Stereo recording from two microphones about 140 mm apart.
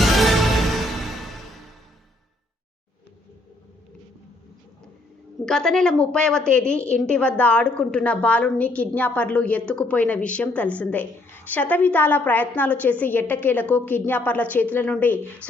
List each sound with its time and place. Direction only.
0.0 s music: centre (ahead or behind)
5.5 s a woman's voice: 5° left (ahead or behind)